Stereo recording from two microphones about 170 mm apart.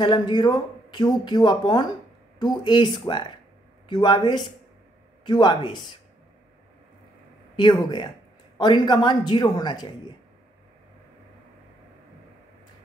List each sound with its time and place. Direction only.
0.0 s speech: 25° left (ahead or behind)
7.5 s speech: 25° left (ahead or behind)